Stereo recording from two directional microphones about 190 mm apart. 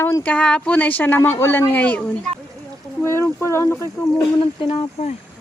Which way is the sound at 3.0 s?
15° left (ahead or behind).